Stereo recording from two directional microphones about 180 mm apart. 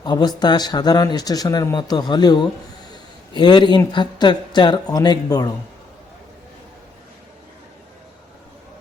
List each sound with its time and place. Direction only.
0.0 s speech: 25° left (ahead or behind)